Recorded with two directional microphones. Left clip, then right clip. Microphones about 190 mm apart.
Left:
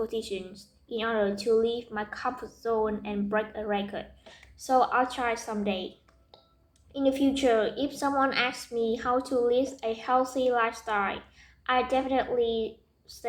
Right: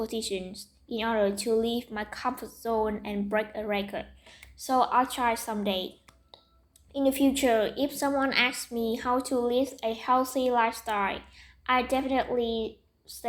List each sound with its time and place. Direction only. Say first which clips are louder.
0.0 s a woman's voice: even; 35° right (ahead or behind)
6.9 s a woman's voice: right 1 dB; 30° right (ahead or behind)